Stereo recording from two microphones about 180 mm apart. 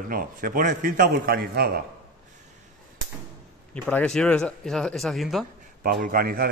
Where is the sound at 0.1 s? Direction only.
50° right (ahead or behind).